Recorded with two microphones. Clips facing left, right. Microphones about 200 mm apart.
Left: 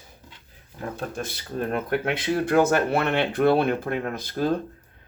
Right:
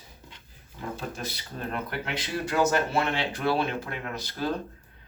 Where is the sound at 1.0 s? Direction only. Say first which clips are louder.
Left 4 dB; 50° left (ahead or behind).